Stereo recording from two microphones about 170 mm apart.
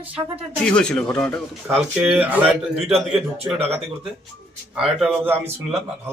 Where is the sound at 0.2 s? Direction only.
20° right (ahead or behind).